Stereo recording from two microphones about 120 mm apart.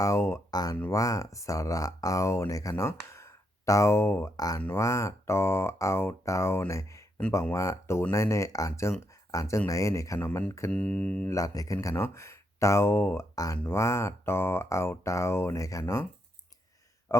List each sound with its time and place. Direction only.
0.0 s speech: 25° left (ahead or behind)
10.7 s a sound: 10° left (ahead or behind)
11.3 s speech: 30° left (ahead or behind)
13.3 s speech: 30° left (ahead or behind)
17.1 s speech: 25° left (ahead or behind)